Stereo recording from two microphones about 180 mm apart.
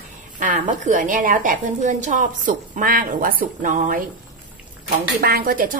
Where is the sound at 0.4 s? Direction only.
45° right (ahead or behind).